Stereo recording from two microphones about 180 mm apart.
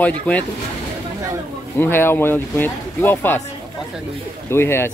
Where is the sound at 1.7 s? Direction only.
10° left (ahead or behind).